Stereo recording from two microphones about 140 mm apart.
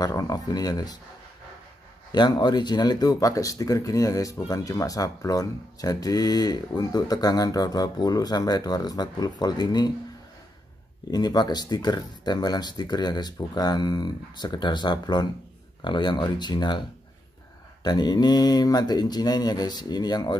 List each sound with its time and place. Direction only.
0.0 s speech: 25° left (ahead or behind)
2.1 s speech: 30° left (ahead or behind)
11.1 s speech: 30° left (ahead or behind)
17.8 s speech: 30° left (ahead or behind)